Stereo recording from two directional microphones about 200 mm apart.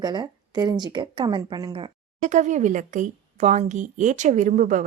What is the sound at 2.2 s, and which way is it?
Speech, 35° right (ahead or behind).